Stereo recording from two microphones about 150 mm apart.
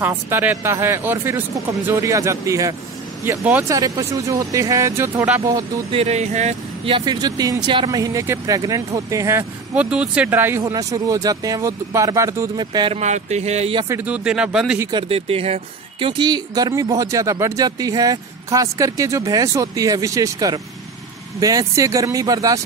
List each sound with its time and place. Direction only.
0.3 s speech: 15° right (ahead or behind)
5.5 s speech: 25° right (ahead or behind)
5.9 s a sound: 45° right (ahead or behind)
6.9 s speech: 30° right (ahead or behind)
9.8 s speech: 5° right (ahead or behind); by 12.9 s 30° right (ahead or behind)
12.9 s a sound: 50° right (ahead or behind)
13.8 s speech: 10° right (ahead or behind)
14.9 s speech: 35° right (ahead or behind)
16.1 s speech: 30° right (ahead or behind)